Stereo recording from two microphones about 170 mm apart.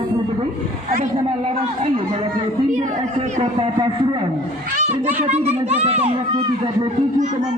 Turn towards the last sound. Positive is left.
turn(degrees=-35)  # may be behind; listen again after turning